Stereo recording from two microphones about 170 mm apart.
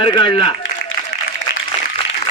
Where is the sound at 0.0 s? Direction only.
30° left (ahead or behind).